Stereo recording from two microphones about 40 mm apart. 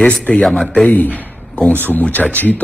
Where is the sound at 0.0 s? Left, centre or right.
Left.